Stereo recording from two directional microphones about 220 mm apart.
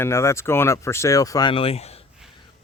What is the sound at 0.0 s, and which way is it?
Speech, 10° left (ahead or behind).